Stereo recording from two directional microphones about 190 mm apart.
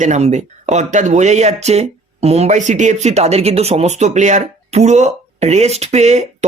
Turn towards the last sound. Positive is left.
turn(degrees=-40)  # may be behind; listen again after turning